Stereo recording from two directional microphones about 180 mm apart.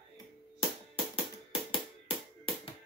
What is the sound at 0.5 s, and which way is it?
Music, 30° left (ahead or behind).